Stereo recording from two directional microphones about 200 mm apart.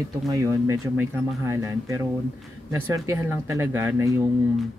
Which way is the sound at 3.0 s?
15° right (ahead or behind).